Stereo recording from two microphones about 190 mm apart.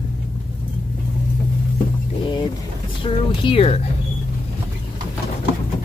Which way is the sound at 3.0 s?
30° left (ahead or behind).